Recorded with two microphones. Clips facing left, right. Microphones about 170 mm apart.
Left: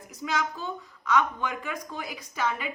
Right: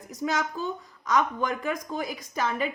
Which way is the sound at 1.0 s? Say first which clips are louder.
Right 1 dB; 40° right (ahead or behind).